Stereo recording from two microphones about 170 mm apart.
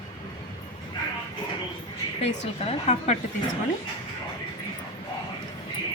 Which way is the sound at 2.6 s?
40° left (ahead or behind).